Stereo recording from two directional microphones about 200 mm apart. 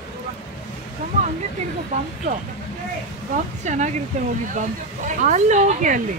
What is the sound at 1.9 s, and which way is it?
Speech, 35° right (ahead or behind).